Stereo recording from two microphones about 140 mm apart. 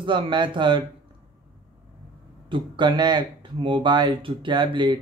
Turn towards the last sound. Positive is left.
turn(degrees=-35)  # may be behind; listen again after turning